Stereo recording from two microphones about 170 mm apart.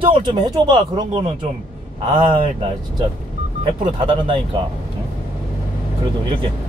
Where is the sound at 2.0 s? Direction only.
30° right (ahead or behind).